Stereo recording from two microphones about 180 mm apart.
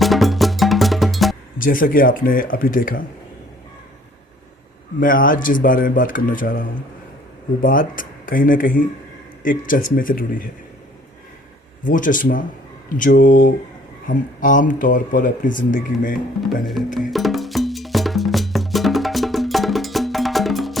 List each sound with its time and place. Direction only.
0.0 s music: centre (ahead or behind)
1.5 s speech: 50° left (ahead or behind)
4.9 s speech: 50° left (ahead or behind)
11.8 s speech: 45° left (ahead or behind)
16.6 s music: centre (ahead or behind)